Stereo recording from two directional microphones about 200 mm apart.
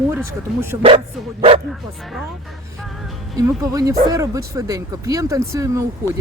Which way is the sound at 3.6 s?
15° right (ahead or behind).